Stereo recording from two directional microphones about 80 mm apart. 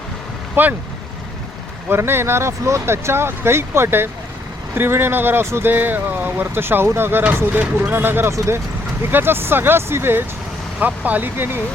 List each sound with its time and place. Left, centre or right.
0.6 s speech: right
1.9 s speech: right